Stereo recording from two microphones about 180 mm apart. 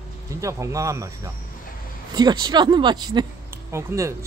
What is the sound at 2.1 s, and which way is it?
Speech, 25° right (ahead or behind).